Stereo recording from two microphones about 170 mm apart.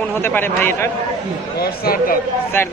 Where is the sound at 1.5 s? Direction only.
65° left (ahead or behind).